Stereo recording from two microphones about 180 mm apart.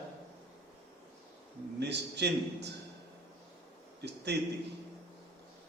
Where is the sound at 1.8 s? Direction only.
70° right (ahead or behind).